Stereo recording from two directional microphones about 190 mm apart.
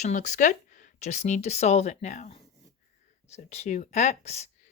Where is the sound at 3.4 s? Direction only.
35° left (ahead or behind).